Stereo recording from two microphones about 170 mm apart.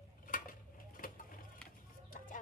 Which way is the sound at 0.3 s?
55° left (ahead or behind).